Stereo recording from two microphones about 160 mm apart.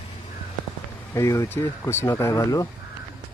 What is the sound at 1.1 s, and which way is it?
Speech, 20° left (ahead or behind).